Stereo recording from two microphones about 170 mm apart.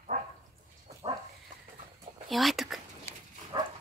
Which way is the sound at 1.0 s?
35° right (ahead or behind).